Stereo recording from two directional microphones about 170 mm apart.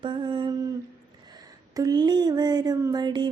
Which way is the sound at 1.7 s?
20° right (ahead or behind).